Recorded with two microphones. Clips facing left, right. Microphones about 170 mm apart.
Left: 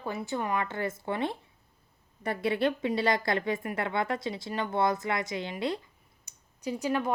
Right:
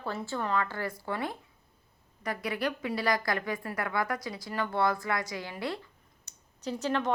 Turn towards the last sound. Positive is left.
turn(degrees=10)  # may be behind; listen again after turning